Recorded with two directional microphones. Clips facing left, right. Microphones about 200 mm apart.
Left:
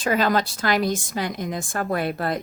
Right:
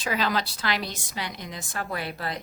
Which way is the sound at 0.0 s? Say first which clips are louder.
Left 6 dB; 50° left (ahead or behind).